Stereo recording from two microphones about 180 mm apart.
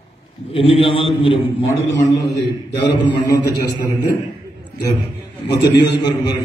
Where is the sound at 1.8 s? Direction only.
75° left (ahead or behind).